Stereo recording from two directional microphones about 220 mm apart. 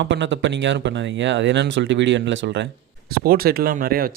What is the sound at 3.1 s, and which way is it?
Speech, 45° right (ahead or behind).